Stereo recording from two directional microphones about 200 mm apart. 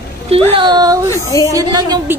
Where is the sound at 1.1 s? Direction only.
15° left (ahead or behind).